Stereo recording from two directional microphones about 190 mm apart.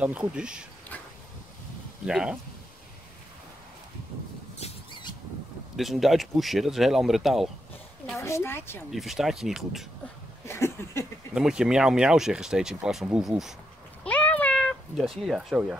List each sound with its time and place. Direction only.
0.0 s speech: 5° right (ahead or behind)
2.0 s speech: 5° right (ahead or behind)
4.6 s a sound: 30° left (ahead or behind)
5.8 s speech: centre (ahead or behind)
8.2 s a woman's voice: 15° left (ahead or behind)
8.9 s speech: centre (ahead or behind)
10.4 s a sound: 15° left (ahead or behind)
11.3 s speech: 5° right (ahead or behind)
14.0 s cat: 5° left (ahead or behind)